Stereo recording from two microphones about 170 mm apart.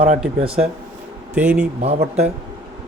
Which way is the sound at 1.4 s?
10° right (ahead or behind).